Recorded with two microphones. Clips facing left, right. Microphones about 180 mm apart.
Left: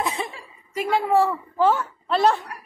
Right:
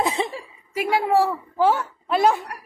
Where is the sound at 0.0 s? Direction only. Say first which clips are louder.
Right 4 dB; 30° right (ahead or behind).